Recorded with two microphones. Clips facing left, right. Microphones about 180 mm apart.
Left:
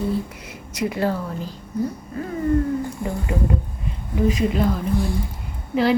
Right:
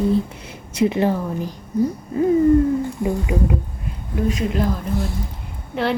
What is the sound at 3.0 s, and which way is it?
Speech, 10° right (ahead or behind).